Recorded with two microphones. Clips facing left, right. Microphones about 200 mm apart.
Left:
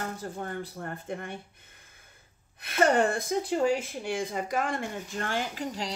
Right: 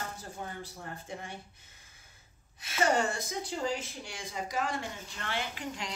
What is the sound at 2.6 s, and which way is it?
Speech, 55° left (ahead or behind).